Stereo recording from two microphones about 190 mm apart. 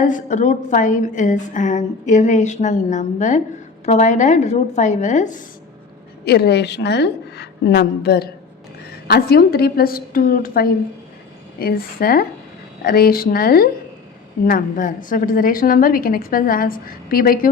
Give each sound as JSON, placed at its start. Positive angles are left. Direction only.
{"t": 0.0, "sound": "a woman's voice", "side_deg": 40}
{"t": 6.2, "sound": "a woman's voice", "side_deg": 60}